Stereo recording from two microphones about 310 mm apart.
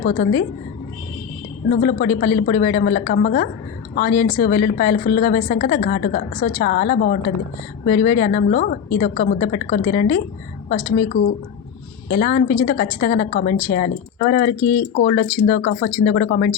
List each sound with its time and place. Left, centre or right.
0.0 s a woman's voice: left
1.7 s a woman's voice: left